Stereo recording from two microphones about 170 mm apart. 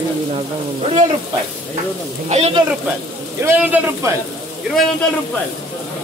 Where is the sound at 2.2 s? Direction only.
40° right (ahead or behind).